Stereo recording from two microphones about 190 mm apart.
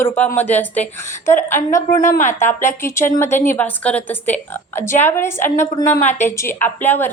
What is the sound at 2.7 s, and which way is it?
A woman's voice, 15° left (ahead or behind).